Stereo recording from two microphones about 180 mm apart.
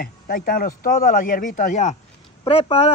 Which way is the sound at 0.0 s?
60° left (ahead or behind).